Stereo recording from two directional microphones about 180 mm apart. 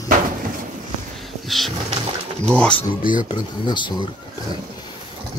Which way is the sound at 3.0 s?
50° left (ahead or behind).